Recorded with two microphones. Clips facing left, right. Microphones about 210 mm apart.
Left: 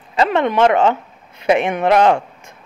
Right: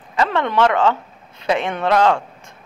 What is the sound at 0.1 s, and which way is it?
Speech, 20° left (ahead or behind).